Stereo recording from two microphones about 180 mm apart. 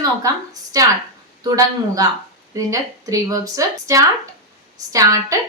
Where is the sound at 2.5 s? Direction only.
20° right (ahead or behind).